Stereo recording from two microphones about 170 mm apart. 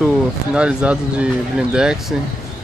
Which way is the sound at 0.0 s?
5° right (ahead or behind).